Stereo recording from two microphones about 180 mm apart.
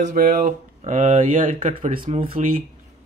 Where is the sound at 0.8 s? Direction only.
40° right (ahead or behind).